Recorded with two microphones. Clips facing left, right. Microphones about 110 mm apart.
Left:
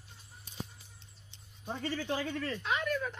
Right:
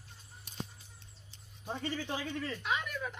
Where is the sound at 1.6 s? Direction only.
Centre (ahead or behind).